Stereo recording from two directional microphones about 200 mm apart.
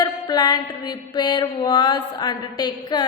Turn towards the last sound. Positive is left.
turn(degrees=20)  # may be behind; listen again after turning